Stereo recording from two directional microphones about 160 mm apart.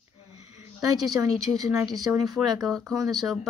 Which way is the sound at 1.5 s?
20° right (ahead or behind).